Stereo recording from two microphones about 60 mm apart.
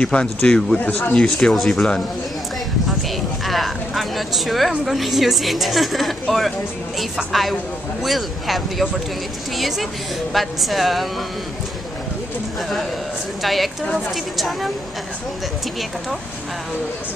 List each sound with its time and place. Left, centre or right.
0.0 s speech: centre
0.7 s speech: left
1.1 s speech: centre
3.4 s speech: centre
8.0 s speech: centre
13.4 s speech: centre